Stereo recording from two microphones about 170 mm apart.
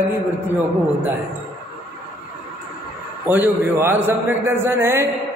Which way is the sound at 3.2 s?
10° right (ahead or behind).